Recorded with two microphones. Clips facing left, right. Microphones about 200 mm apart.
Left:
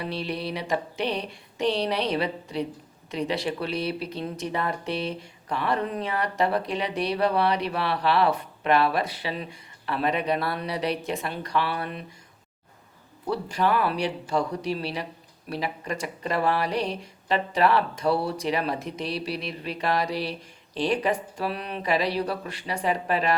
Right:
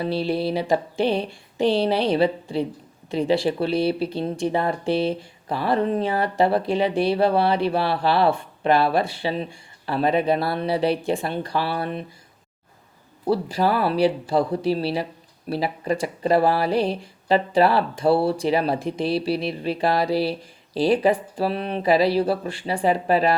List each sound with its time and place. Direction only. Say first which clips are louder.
0.0 s speech: right 7 dB; 30° right (ahead or behind)
13.2 s speech: right 4 dB; 35° right (ahead or behind)